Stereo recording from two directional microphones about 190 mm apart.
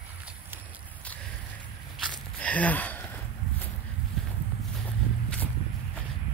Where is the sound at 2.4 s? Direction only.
5° left (ahead or behind).